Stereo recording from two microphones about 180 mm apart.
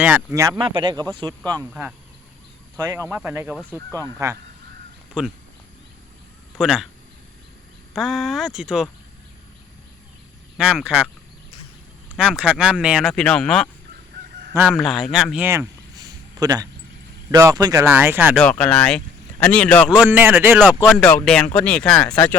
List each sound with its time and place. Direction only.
0.0 s speech: 10° right (ahead or behind)
0.6 s speech: 25° right (ahead or behind)
2.7 s speech: 20° right (ahead or behind)
4.2 s speech: 20° right (ahead or behind)
6.6 s speech: 5° right (ahead or behind)
7.9 s speech: centre (ahead or behind)
10.6 s speech: 5° right (ahead or behind)
12.1 s speech: 5° right (ahead or behind)
14.5 s a man's voice: 10° right (ahead or behind)
16.4 s speech: 20° right (ahead or behind)
18.3 s speech: 5° left (ahead or behind)
19.9 s speech: 10° right (ahead or behind)
20.7 s speech: 10° left (ahead or behind)